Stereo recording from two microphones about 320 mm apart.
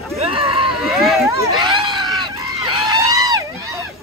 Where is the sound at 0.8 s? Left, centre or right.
Centre.